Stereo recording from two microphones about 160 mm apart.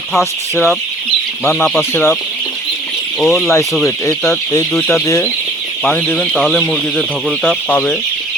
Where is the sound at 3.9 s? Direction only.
20° left (ahead or behind); by 7.5 s centre (ahead or behind).